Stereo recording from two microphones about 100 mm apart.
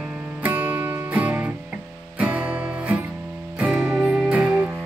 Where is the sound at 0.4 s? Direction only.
15° right (ahead or behind).